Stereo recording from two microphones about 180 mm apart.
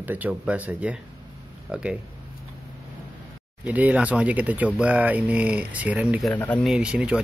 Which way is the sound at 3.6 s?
10° right (ahead or behind).